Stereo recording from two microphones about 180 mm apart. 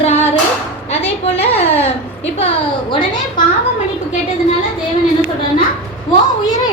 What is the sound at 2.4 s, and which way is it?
A child's voice, 30° left (ahead or behind).